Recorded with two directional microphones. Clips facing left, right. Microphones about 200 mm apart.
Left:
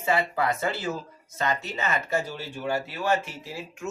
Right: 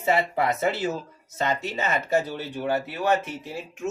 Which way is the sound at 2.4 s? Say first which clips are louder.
Right 3 dB; 20° right (ahead or behind).